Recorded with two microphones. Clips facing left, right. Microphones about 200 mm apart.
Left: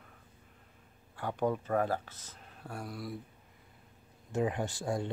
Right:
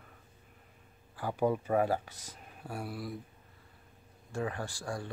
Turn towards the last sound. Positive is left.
turn(degrees=20)  # may be behind; listen again after turning